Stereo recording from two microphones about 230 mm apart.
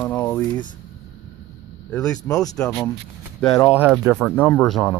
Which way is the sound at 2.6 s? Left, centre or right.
Centre.